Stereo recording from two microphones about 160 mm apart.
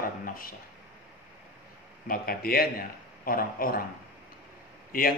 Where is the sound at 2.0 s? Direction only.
65° left (ahead or behind).